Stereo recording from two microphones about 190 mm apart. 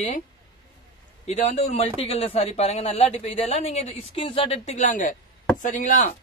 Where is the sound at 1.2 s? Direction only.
35° left (ahead or behind).